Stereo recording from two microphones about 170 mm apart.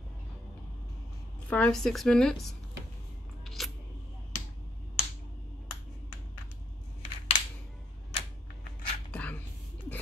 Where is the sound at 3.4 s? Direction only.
Centre (ahead or behind).